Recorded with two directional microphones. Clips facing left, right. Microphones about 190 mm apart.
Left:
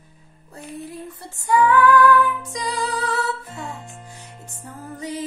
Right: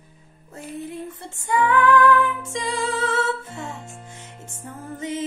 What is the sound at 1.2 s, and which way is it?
Music, 25° right (ahead or behind).